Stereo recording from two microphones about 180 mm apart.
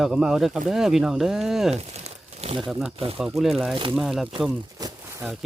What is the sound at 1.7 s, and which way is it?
Crumpling, 35° right (ahead or behind).